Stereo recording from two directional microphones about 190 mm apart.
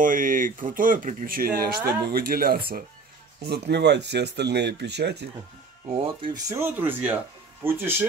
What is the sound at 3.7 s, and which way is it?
Speech, 65° right (ahead or behind).